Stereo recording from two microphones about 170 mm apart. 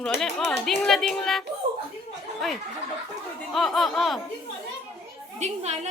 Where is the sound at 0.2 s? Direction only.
Centre (ahead or behind).